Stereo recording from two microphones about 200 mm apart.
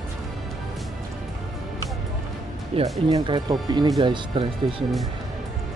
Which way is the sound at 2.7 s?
30° right (ahead or behind).